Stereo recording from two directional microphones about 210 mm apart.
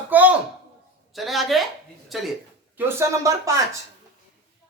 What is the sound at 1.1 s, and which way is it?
A woman's voice, centre (ahead or behind).